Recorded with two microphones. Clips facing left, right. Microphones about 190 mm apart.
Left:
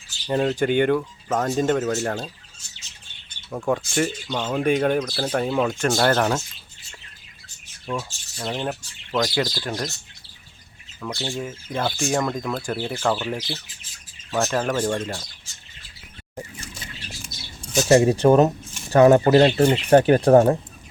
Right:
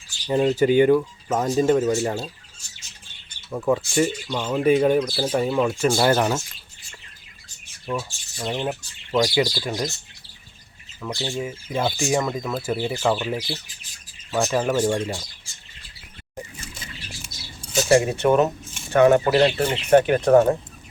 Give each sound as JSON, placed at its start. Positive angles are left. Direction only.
{"t": 0.3, "sound": "speech", "side_deg": -5}
{"t": 3.5, "sound": "speech", "side_deg": 0}
{"t": 7.9, "sound": "speech", "side_deg": -10}
{"t": 11.3, "sound": "speech", "side_deg": -5}
{"t": 17.8, "sound": "speech", "side_deg": 40}